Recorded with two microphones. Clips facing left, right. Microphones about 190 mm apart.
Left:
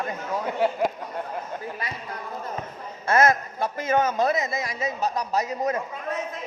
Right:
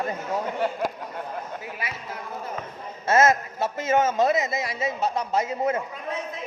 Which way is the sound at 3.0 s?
25° right (ahead or behind).